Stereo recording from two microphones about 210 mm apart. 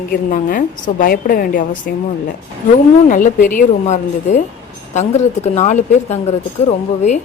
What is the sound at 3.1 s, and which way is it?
A woman's voice, 40° left (ahead or behind).